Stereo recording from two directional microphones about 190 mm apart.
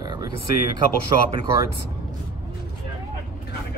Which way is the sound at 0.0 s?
20° right (ahead or behind).